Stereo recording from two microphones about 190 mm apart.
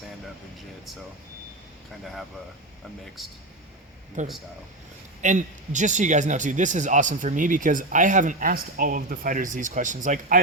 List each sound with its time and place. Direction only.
3.2 s speech: centre (ahead or behind)
4.2 s a man's voice: 40° right (ahead or behind)